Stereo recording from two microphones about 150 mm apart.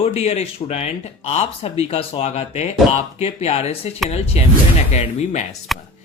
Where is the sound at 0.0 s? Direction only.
45° left (ahead or behind).